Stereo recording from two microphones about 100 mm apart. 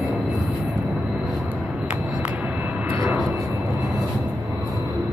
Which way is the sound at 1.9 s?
15° right (ahead or behind).